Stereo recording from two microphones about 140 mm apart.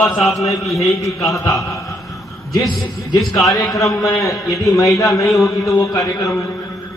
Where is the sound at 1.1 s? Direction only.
20° left (ahead or behind).